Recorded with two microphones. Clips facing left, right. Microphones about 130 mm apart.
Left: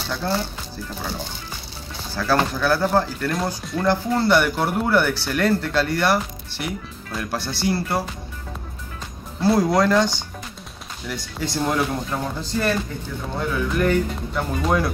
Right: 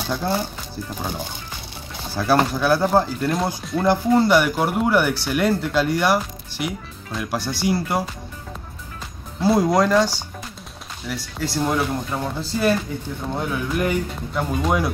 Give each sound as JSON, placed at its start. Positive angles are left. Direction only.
{"t": 0.0, "sound": "speech", "side_deg": -15}
{"t": 2.1, "sound": "speech", "side_deg": -15}
{"t": 9.4, "sound": "speech", "side_deg": -15}